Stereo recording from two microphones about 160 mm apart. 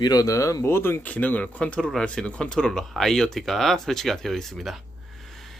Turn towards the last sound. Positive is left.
turn(degrees=0)  # may be behind; listen again after turning